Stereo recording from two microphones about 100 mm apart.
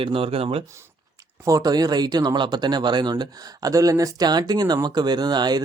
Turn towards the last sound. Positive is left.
turn(degrees=-45)  # may be behind; listen again after turning